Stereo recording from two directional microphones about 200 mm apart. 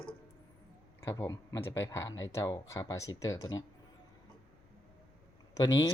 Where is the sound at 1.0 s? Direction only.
15° left (ahead or behind).